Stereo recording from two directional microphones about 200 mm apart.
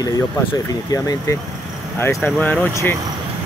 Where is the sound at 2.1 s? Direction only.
Centre (ahead or behind).